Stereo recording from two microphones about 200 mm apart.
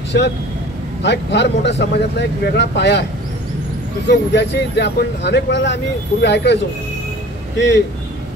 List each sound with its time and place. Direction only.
1.0 s speech: 60° left (ahead or behind)
4.1 s speech: 60° left (ahead or behind)